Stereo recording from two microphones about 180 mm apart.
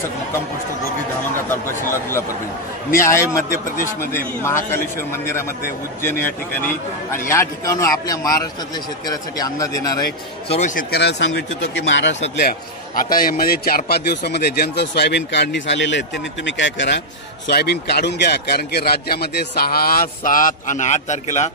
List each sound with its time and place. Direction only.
1.5 s a man's voice: 15° left (ahead or behind)
5.1 s a man's voice: 15° left (ahead or behind)
7.1 s a man's voice: 15° left (ahead or behind)
10.5 s a man's voice: 45° left (ahead or behind); by 11.8 s 75° left (ahead or behind)
11.9 s speech: 90° left
12.4 s a man's voice: 55° left (ahead or behind); by 17.0 s 85° left
17.5 s a man's voice: 65° left (ahead or behind); by 21.5 s 40° left (ahead or behind)